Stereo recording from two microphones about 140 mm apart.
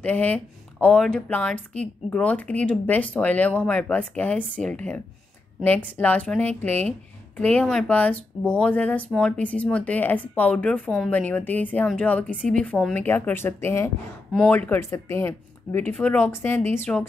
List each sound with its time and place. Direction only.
0.0 s speech: 10° left (ahead or behind)
14.3 s speech: 5° left (ahead or behind)